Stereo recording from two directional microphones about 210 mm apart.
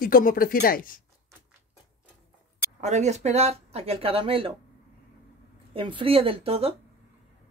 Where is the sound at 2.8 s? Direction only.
35° right (ahead or behind).